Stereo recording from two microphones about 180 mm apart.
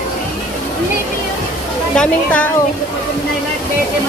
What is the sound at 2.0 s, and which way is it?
Speech, 10° left (ahead or behind).